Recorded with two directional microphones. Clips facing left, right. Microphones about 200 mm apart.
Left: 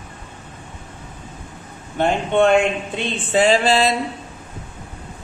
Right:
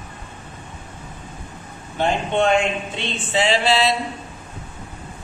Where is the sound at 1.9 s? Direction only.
55° left (ahead or behind).